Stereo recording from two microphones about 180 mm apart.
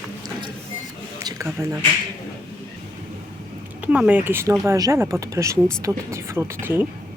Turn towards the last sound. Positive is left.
turn(degrees=-10)  # may be behind; listen again after turning